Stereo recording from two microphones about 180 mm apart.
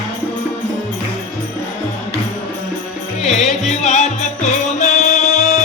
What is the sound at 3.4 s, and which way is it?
Music, 40° left (ahead or behind).